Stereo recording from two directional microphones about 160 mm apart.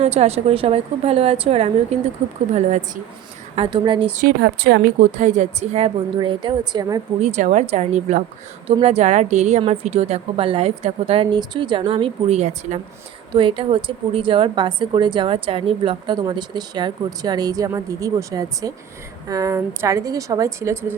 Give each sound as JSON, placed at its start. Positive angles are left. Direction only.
{"t": 0.0, "sound": "a woman's voice", "side_deg": -40}
{"t": 3.5, "sound": "a woman's voice", "side_deg": -35}
{"t": 4.4, "sound": "a woman's voice", "side_deg": -90}
{"t": 5.1, "sound": "a woman's voice", "side_deg": -50}
{"t": 6.1, "sound": "a woman's voice", "side_deg": -30}
{"t": 7.2, "sound": "a woman's voice", "side_deg": -45}
{"t": 13.3, "sound": "a woman's voice", "side_deg": -35}